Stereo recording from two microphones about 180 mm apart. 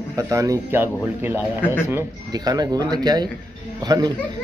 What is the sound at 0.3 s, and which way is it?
Speech, 15° right (ahead or behind).